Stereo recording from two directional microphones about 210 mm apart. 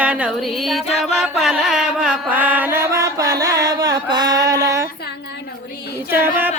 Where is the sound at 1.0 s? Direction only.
5° right (ahead or behind).